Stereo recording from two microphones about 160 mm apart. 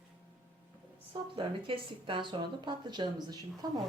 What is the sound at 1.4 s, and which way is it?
Speech, 30° right (ahead or behind).